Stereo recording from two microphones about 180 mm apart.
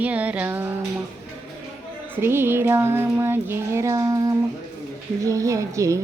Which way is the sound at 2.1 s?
10° right (ahead or behind).